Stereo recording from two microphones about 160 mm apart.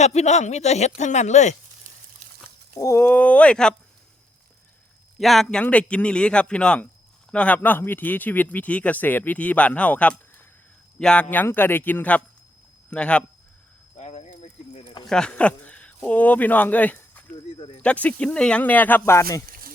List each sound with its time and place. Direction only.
0.0 s speech: 45° left (ahead or behind)
2.7 s speech: 20° left (ahead or behind)
5.2 s speech: centre (ahead or behind)
13.9 s a sound: 45° left (ahead or behind)
15.0 s speech: 5° left (ahead or behind)
19.5 s a sound: 65° right (ahead or behind)